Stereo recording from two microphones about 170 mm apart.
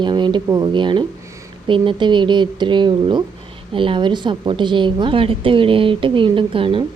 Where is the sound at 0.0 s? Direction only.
25° right (ahead or behind).